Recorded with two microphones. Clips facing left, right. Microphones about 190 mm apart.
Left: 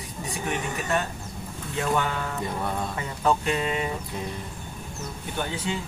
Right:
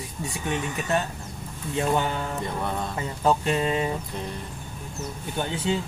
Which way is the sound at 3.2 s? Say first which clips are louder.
Right 1 dB; 30° right (ahead or behind).